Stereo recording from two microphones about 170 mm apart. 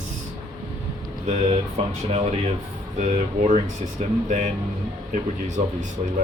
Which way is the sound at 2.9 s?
45° right (ahead or behind).